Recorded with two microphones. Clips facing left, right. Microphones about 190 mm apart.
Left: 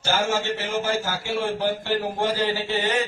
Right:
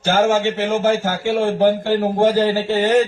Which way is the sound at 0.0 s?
55° right (ahead or behind).